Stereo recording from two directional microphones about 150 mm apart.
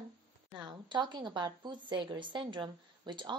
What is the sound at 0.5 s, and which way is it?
A woman's voice, 30° right (ahead or behind).